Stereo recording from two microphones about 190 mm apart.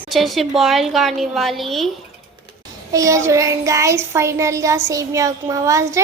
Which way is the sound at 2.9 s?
15° right (ahead or behind).